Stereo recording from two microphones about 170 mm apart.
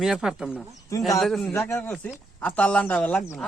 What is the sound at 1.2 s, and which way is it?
Speech, centre (ahead or behind).